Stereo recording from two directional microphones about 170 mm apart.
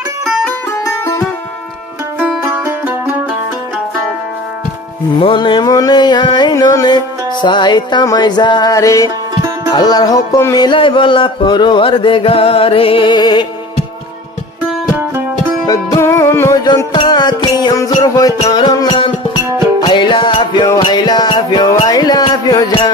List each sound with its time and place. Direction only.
0.8 s music: 20° left (ahead or behind)
2.1 s music: 10° right (ahead or behind)
5.2 s music: 30° left (ahead or behind)
15.6 s music: 20° left (ahead or behind)